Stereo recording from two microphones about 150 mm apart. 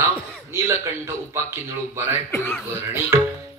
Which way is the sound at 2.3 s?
15° left (ahead or behind).